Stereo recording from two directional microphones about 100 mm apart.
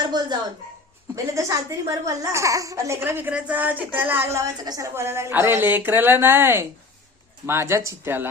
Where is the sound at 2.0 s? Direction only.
35° right (ahead or behind).